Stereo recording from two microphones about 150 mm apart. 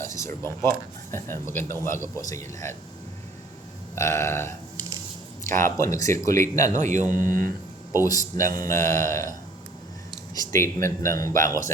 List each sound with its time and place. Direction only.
0.0 s speech: 20° left (ahead or behind)
3.9 s speech: 15° left (ahead or behind)
5.5 s speech: 20° left (ahead or behind)
6.7 s speech: 55° right (ahead or behind)
8.0 s speech: 25° left (ahead or behind)
10.5 s speech: 20° left (ahead or behind)
11.3 s speech: 60° right (ahead or behind)